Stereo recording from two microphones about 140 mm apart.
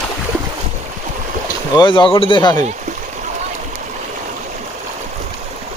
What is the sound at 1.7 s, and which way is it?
Speech, 35° left (ahead or behind).